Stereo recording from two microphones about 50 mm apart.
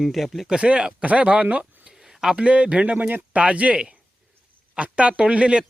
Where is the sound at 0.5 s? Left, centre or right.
Right.